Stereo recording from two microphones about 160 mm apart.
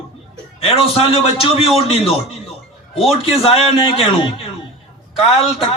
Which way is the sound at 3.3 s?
35° left (ahead or behind).